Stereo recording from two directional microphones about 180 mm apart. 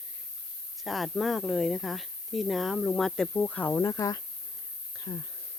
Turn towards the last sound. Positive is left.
turn(degrees=20)  # may be behind; listen again after turning